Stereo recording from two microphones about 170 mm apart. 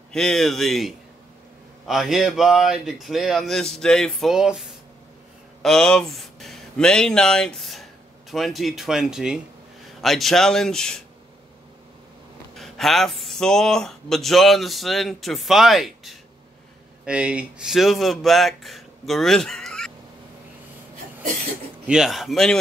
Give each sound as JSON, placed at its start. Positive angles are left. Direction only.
{"t": 0.1, "sound": "speech", "side_deg": 5}
{"t": 12.5, "sound": "speech", "side_deg": 0}
{"t": 21.8, "sound": "speech", "side_deg": -5}